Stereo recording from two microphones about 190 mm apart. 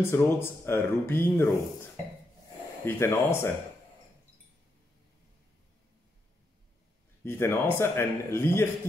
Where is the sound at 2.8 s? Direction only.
10° left (ahead or behind).